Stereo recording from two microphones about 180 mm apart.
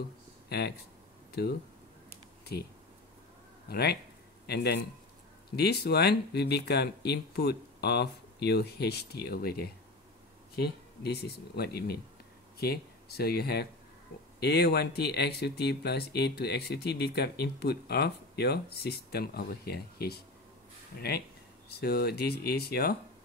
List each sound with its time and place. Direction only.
0.5 s speech: 65° left (ahead or behind)
2.5 s speech: 60° left (ahead or behind)
11.0 s speech: 65° left (ahead or behind)